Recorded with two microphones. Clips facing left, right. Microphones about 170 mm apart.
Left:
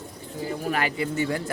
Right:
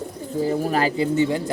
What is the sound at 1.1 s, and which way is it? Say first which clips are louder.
Speech: right 6 dB; 20° right (ahead or behind).